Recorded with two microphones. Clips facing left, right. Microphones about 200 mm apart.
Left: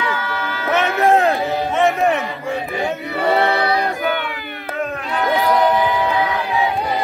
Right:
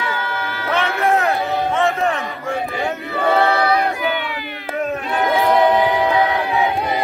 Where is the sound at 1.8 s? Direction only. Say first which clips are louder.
Left 5 dB; 15° left (ahead or behind).